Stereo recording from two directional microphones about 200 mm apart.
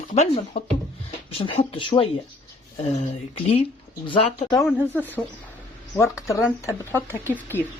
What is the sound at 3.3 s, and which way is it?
Speech, 30° left (ahead or behind).